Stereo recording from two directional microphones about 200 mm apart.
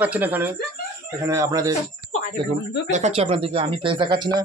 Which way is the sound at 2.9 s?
35° right (ahead or behind).